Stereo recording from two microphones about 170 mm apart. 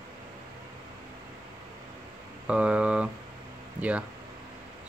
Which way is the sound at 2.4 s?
5° right (ahead or behind).